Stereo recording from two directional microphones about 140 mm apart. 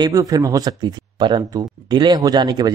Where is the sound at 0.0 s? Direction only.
25° right (ahead or behind).